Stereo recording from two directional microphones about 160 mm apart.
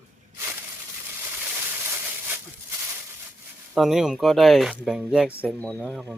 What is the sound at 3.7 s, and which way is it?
Speech, centre (ahead or behind).